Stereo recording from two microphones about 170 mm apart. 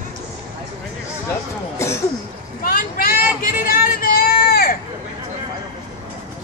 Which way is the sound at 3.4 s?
55° left (ahead or behind).